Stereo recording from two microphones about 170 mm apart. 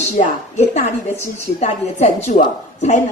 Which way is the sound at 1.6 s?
40° left (ahead or behind).